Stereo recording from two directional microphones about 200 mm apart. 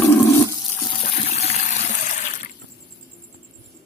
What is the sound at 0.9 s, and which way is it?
Water, 30° left (ahead or behind).